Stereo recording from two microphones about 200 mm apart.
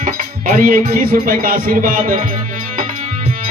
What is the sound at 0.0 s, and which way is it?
Music, 40° right (ahead or behind).